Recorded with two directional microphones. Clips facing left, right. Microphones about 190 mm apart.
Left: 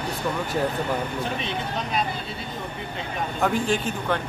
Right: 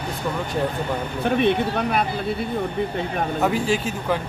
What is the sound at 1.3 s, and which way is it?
Speech, 60° right (ahead or behind).